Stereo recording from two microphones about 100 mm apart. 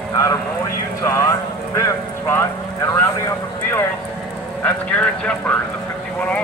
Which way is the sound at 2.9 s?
25° left (ahead or behind).